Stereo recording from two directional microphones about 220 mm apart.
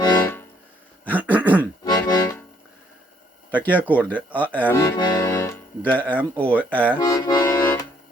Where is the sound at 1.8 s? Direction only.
15° left (ahead or behind).